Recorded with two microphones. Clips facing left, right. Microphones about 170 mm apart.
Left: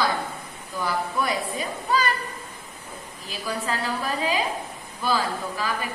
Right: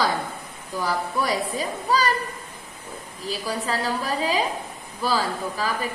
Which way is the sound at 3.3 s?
35° right (ahead or behind).